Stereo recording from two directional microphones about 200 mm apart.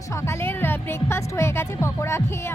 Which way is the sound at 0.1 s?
15° left (ahead or behind).